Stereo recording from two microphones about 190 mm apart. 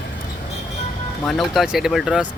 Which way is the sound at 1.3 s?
Centre (ahead or behind).